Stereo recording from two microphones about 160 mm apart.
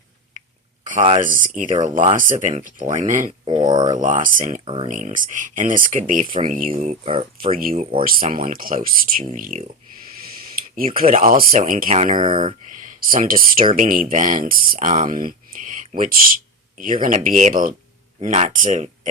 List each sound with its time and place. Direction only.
1.2 s speech: 55° right (ahead or behind)
3.4 s speech: 30° right (ahead or behind)
3.9 s speech: 55° right (ahead or behind)
4.6 s speech: 35° right (ahead or behind)
4.9 s speech: 50° right (ahead or behind); by 7.5 s 35° right (ahead or behind)
7.5 s speech: 60° right (ahead or behind)
10.8 s speech: 60° right (ahead or behind)
12.1 s speech: 35° right (ahead or behind)
13.1 s speech: 60° right (ahead or behind)
18.2 s speech: 45° right (ahead or behind)